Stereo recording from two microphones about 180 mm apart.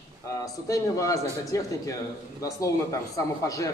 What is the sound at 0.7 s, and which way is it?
A man's voice, 20° left (ahead or behind).